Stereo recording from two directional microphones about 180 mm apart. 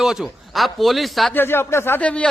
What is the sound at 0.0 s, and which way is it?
A man's voice, centre (ahead or behind).